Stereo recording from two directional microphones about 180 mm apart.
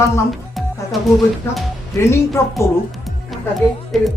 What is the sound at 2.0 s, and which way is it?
Speech, 15° left (ahead or behind).